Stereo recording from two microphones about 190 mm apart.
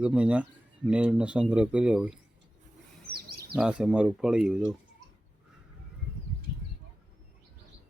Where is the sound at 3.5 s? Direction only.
5° right (ahead or behind).